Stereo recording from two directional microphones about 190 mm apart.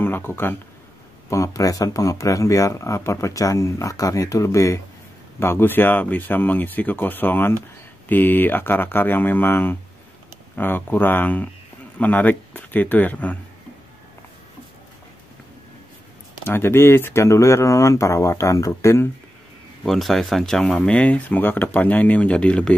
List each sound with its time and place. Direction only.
0.0 s speech: 10° left (ahead or behind)
16.4 s speech: 10° left (ahead or behind)
19.8 s speech: centre (ahead or behind)